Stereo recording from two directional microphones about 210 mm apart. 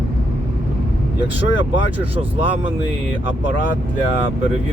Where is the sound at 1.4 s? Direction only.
25° right (ahead or behind).